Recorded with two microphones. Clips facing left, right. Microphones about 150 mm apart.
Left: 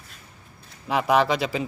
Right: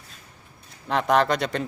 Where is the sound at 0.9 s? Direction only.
5° left (ahead or behind).